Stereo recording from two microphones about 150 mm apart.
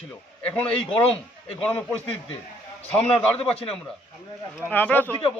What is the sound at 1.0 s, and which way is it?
Speech, 40° left (ahead or behind).